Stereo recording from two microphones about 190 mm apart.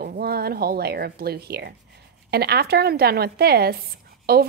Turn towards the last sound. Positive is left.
turn(degrees=-55)  # may be behind; listen again after turning